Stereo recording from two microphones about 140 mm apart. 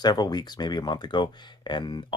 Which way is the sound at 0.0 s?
30° left (ahead or behind).